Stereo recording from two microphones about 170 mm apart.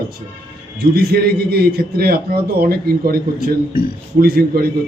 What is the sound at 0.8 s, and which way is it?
A man's voice, 65° right (ahead or behind).